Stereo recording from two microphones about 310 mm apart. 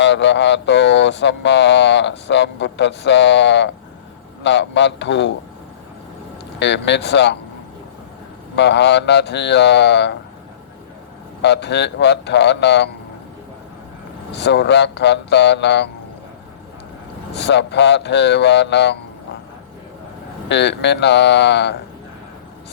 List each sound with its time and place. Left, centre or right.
0.0 s speech: left
6.6 s speech: left
8.5 s speech: left
11.4 s speech: left
14.3 s speech: left
17.3 s speech: left
20.5 s speech: left